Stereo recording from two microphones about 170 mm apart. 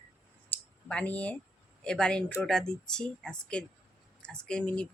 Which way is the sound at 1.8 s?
5° left (ahead or behind).